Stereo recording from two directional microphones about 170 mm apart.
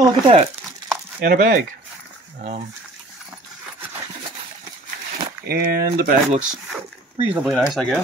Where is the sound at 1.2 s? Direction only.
60° right (ahead or behind).